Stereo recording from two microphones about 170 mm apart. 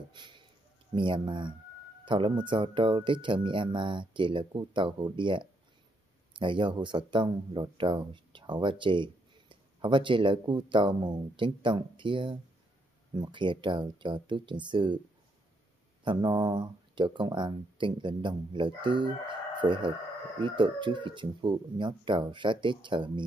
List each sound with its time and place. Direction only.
0.1 s speech: 25° right (ahead or behind)
16.0 s speech: 25° right (ahead or behind)